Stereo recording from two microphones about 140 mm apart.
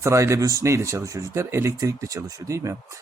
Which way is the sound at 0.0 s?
20° right (ahead or behind).